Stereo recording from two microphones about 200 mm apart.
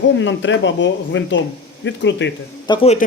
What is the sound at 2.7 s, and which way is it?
Speech, 25° left (ahead or behind).